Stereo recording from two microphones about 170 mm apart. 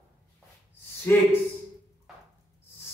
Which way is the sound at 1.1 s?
10° left (ahead or behind).